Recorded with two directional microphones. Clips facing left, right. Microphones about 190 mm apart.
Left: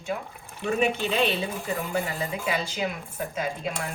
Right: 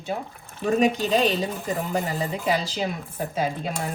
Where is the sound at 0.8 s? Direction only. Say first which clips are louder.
Right 3 dB; 40° right (ahead or behind).